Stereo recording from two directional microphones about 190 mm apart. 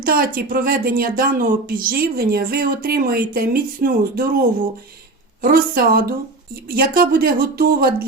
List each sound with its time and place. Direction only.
0.0 s speech: 50° right (ahead or behind)